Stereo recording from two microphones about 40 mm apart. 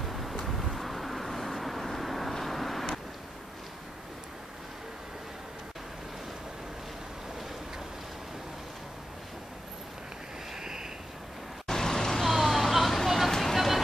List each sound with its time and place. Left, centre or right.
0.0 s vehicle: centre
10.6 s a sound: centre
11.6 s vehicle: centre
12.3 s vehicle: centre